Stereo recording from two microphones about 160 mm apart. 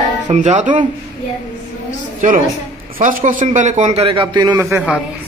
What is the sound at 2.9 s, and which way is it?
A man's voice, 60° right (ahead or behind).